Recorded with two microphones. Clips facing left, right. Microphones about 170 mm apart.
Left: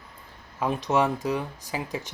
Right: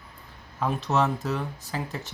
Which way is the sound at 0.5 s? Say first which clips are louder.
Left 1 dB; 15° left (ahead or behind).